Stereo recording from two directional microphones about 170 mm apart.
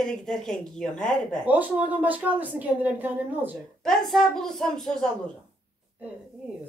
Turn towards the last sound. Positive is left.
turn(degrees=5)  # may be behind; listen again after turning